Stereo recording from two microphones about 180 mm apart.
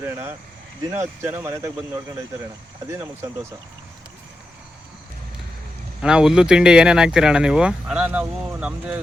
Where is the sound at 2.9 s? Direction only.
15° right (ahead or behind).